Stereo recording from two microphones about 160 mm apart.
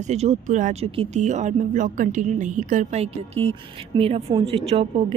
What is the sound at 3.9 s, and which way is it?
Speech, 25° right (ahead or behind).